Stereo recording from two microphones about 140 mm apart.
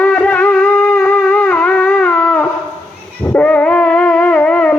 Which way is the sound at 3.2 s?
10° left (ahead or behind).